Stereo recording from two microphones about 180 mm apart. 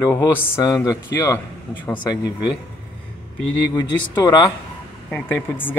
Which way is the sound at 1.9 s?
25° left (ahead or behind).